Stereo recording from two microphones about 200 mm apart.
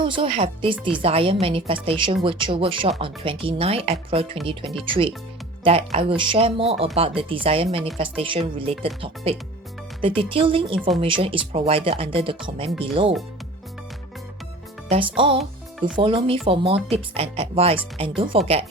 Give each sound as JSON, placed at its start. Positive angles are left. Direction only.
{"t": 0.0, "sound": "speech", "side_deg": -25}
{"t": 10.2, "sound": "speech", "side_deg": -25}
{"t": 10.8, "sound": "speech", "side_deg": 0}
{"t": 11.0, "sound": "speech", "side_deg": -25}
{"t": 14.8, "sound": "speech", "side_deg": -25}